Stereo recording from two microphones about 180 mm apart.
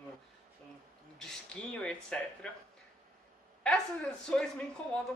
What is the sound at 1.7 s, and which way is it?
Speech, 5° left (ahead or behind).